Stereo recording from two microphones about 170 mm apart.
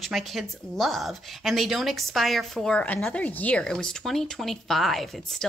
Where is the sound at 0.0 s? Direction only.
Centre (ahead or behind).